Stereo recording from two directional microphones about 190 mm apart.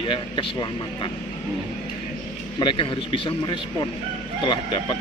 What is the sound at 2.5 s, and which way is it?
A man's voice, 25° left (ahead or behind).